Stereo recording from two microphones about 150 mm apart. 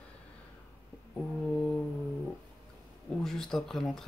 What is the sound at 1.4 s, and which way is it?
Speech, 5° left (ahead or behind).